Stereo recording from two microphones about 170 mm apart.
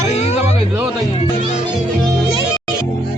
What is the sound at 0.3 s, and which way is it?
Music, 10° right (ahead or behind).